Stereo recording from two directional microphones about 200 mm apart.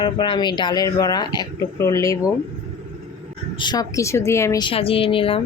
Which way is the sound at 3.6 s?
20° left (ahead or behind).